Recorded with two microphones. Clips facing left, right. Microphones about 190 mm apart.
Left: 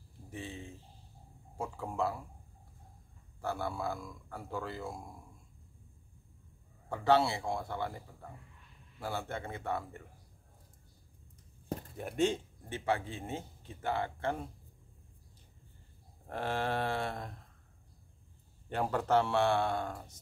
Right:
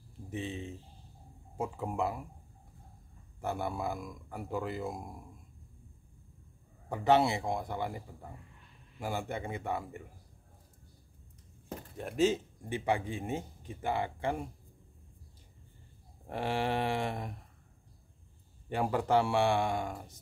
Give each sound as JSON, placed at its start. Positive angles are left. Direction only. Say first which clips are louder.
{"t": 0.3, "sound": "speech", "louder": "right 5 dB", "side_deg": -20}
{"t": 3.3, "sound": "speech", "louder": "right 1 dB", "side_deg": -20}
{"t": 6.9, "sound": "speech", "louder": "right 2 dB", "side_deg": -20}
{"t": 12.0, "sound": "speech", "louder": "right 3 dB", "side_deg": 0}
{"t": 12.6, "sound": "speech", "louder": "right 2 dB", "side_deg": -15}
{"t": 16.3, "sound": "speech", "louder": "right 2 dB", "side_deg": -15}
{"t": 18.7, "sound": "speech", "louder": "right 1 dB", "side_deg": -10}